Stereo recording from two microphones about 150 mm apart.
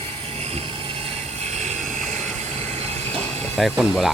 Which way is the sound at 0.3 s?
45° right (ahead or behind).